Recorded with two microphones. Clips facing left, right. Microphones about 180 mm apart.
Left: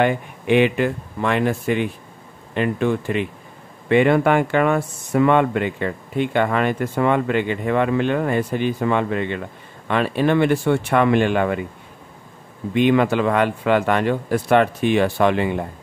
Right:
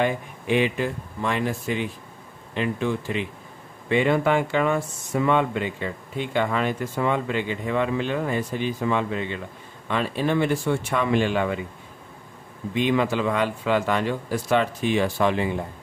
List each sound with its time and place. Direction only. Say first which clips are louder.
0.0 s speech: left 5 dB; 65° left (ahead or behind)
12.7 s speech: left 6 dB; 60° left (ahead or behind)